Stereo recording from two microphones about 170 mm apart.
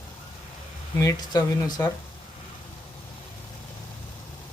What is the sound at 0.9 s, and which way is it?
Speech, 20° left (ahead or behind).